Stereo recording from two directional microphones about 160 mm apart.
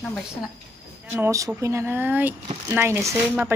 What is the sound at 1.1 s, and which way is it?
Speech, 15° right (ahead or behind).